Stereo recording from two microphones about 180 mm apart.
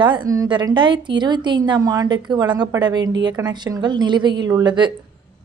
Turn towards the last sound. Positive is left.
turn(degrees=-25)  # may be behind; listen again after turning